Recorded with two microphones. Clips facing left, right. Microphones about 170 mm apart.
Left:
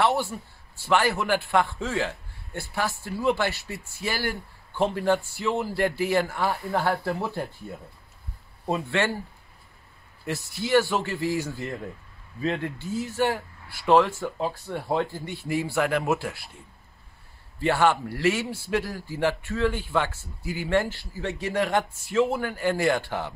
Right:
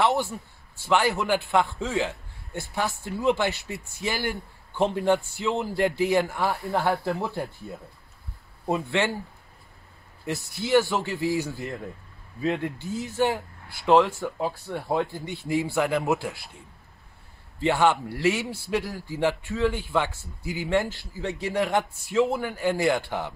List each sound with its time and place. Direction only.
0.0 s a man's voice: 20° right (ahead or behind)
8.6 s a man's voice: 15° right (ahead or behind)
10.2 s a man's voice: 15° right (ahead or behind)
12.4 s a man's voice: 10° right (ahead or behind)
17.6 s a man's voice: 15° right (ahead or behind)
21.6 s a man's voice: centre (ahead or behind)
22.2 s a man's voice: 15° right (ahead or behind)